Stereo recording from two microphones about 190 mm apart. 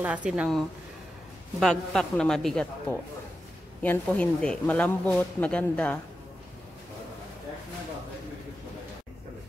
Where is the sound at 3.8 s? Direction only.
10° left (ahead or behind).